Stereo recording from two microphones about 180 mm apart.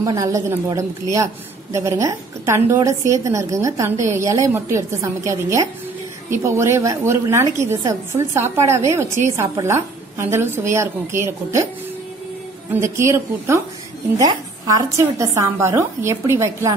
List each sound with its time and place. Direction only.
0.0 s a woman's voice: 20° right (ahead or behind)
12.7 s a woman's voice: 15° right (ahead or behind)